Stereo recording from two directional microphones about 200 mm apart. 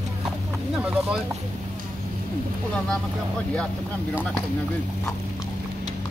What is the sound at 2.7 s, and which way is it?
Speech, 5° left (ahead or behind).